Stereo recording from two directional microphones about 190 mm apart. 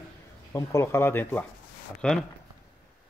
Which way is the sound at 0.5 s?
15° left (ahead or behind).